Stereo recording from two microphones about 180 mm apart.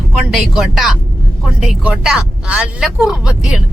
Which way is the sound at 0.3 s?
5° right (ahead or behind).